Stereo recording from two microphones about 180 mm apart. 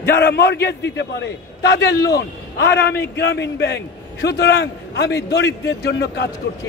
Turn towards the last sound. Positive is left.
turn(degrees=70)  # may be behind; listen again after turning